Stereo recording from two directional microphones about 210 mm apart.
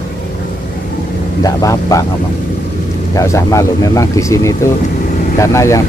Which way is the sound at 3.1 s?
15° left (ahead or behind).